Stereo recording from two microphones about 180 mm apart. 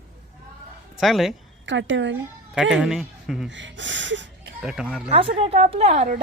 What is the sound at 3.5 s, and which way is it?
Speech, 90° right.